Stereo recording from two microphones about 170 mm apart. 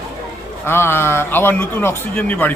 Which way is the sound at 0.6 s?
15° left (ahead or behind).